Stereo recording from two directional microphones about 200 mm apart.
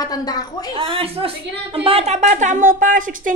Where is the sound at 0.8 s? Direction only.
25° right (ahead or behind).